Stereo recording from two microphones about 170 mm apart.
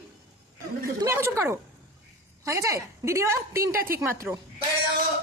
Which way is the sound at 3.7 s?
60° right (ahead or behind).